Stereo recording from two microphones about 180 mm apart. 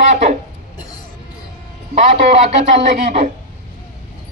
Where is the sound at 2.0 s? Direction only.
40° right (ahead or behind).